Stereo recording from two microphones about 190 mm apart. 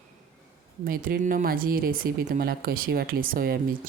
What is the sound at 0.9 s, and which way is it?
Speech, 50° right (ahead or behind).